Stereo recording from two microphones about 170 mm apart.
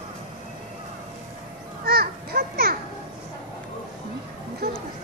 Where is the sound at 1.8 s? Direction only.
65° right (ahead or behind).